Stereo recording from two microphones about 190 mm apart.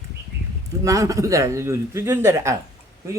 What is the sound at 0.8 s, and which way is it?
A man's voice, 15° right (ahead or behind).